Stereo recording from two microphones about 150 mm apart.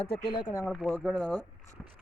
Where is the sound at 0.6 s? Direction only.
Centre (ahead or behind).